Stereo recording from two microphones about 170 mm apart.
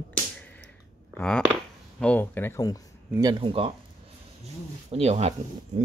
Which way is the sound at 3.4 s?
30° right (ahead or behind).